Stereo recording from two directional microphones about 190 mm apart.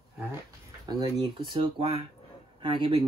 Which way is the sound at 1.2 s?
25° right (ahead or behind).